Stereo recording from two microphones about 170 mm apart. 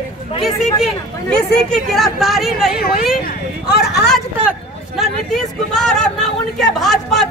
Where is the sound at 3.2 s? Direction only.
65° left (ahead or behind).